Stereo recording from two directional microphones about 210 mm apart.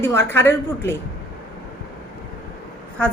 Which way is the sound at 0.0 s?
10° left (ahead or behind).